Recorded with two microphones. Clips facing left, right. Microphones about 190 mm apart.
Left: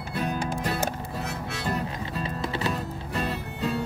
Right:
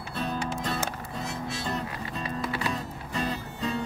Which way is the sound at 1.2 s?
65° left (ahead or behind).